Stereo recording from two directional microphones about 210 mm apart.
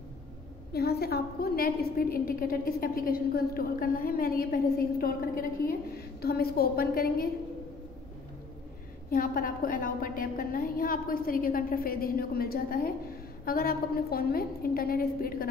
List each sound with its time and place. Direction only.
0.7 s a woman's voice: 50° left (ahead or behind)
9.1 s a woman's voice: 40° left (ahead or behind)